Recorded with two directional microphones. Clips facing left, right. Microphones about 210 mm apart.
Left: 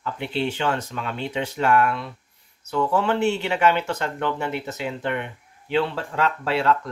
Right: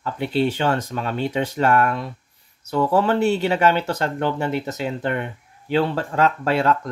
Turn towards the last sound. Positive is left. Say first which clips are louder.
# right 2 dB
turn(degrees=-45)  # may be behind; listen again after turning